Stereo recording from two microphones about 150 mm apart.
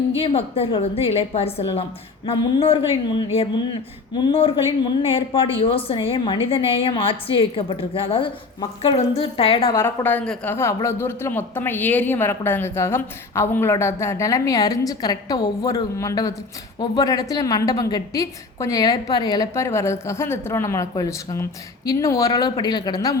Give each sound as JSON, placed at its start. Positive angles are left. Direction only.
{"t": 0.2, "sound": "a woman's voice", "side_deg": 40}
{"t": 9.7, "sound": "a woman's voice", "side_deg": 15}